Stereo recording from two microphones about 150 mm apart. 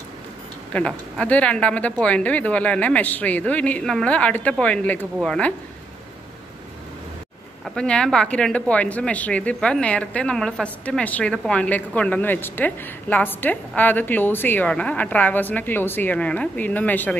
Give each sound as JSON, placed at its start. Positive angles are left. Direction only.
{"t": 0.7, "sound": "a woman's voice", "side_deg": 10}
{"t": 7.6, "sound": "a woman's voice", "side_deg": 5}